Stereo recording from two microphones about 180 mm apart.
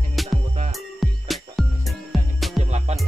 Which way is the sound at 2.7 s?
35° right (ahead or behind).